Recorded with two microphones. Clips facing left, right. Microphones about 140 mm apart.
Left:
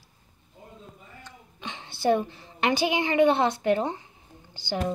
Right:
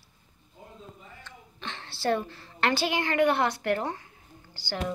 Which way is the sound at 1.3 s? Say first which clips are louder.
Left 1 dB; 15° left (ahead or behind).